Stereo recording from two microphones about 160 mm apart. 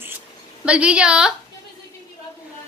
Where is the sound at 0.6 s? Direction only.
5° right (ahead or behind).